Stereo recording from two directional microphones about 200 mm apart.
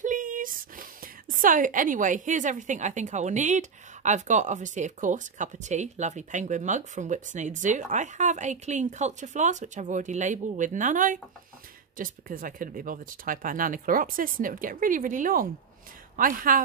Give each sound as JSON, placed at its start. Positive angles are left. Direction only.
{"t": 0.0, "sound": "speech", "side_deg": -40}